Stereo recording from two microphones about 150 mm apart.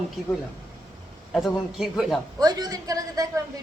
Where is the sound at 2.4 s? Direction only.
25° right (ahead or behind).